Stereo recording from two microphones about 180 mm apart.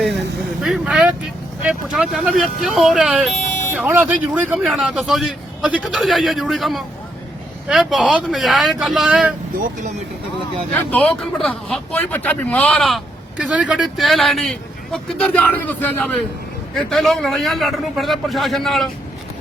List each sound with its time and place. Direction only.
0.6 s vehicle: 5° right (ahead or behind)
1.6 s a man's voice: 5° right (ahead or behind)
9.5 s speech: 50° right (ahead or behind)
10.8 s a man's voice: 10° left (ahead or behind)